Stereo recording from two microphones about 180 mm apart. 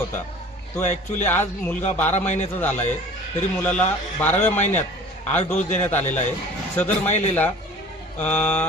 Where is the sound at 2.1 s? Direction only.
40° left (ahead or behind).